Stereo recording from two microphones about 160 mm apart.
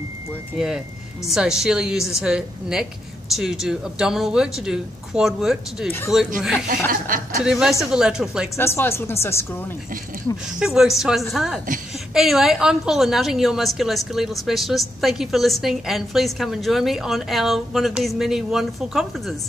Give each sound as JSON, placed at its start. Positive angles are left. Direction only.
{"t": 0.6, "sound": "a woman's voice", "side_deg": -5}
{"t": 5.9, "sound": "speech", "side_deg": 15}
{"t": 6.9, "sound": "a woman's voice", "side_deg": -60}
{"t": 7.4, "sound": "a woman's voice", "side_deg": 0}
{"t": 8.5, "sound": "speech", "side_deg": 15}
{"t": 10.3, "sound": "a woman's voice", "side_deg": -5}